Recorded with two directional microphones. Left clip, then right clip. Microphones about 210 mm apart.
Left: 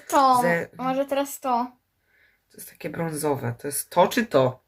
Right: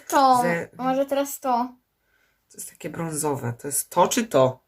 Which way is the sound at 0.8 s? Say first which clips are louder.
Right 2 dB; 20° right (ahead or behind).